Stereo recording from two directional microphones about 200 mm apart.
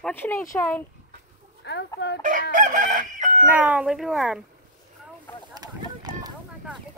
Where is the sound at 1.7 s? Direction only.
60° left (ahead or behind).